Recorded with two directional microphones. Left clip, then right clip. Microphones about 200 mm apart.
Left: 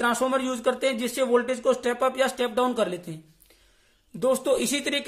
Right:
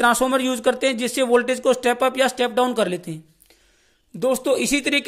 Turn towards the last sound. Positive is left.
turn(degrees=-35)  # may be behind; listen again after turning